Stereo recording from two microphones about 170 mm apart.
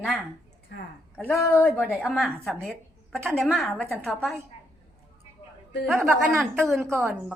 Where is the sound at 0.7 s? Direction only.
90° left.